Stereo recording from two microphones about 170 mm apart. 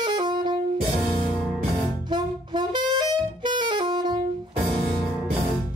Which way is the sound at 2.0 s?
25° right (ahead or behind).